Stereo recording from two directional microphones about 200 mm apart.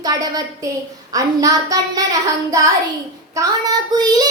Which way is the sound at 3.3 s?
20° right (ahead or behind).